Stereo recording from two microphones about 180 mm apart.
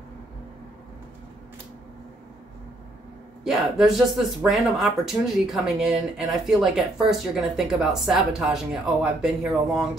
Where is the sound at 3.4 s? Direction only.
Centre (ahead or behind).